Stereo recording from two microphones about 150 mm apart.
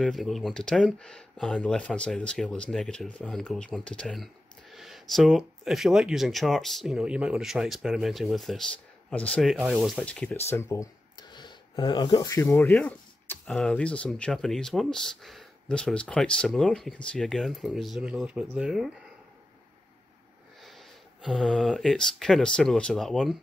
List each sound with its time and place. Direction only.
0.0 s speech: centre (ahead or behind)
9.5 s speech: centre (ahead or behind)
20.6 s speech: centre (ahead or behind)